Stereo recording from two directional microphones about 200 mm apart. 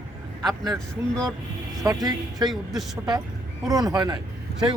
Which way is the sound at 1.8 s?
20° right (ahead or behind).